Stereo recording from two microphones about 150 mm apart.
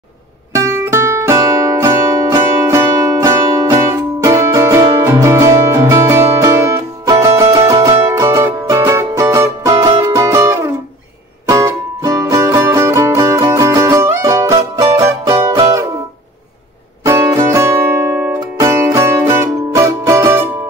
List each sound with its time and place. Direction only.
0.6 s music: 20° right (ahead or behind)
17.0 s music: 20° right (ahead or behind)